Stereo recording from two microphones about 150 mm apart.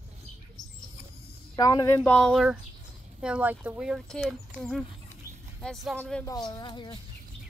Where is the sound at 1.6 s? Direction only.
25° left (ahead or behind).